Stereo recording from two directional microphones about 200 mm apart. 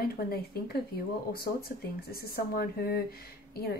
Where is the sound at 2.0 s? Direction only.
50° left (ahead or behind).